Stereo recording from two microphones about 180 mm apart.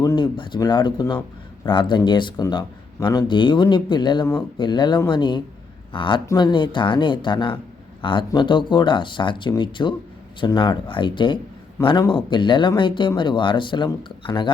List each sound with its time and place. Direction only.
0.0 s speech: 20° left (ahead or behind)